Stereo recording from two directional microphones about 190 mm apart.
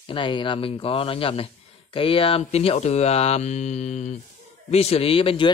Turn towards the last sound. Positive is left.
turn(degrees=30)  # may be behind; listen again after turning